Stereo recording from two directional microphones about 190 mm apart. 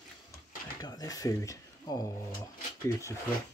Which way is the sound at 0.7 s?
20° left (ahead or behind).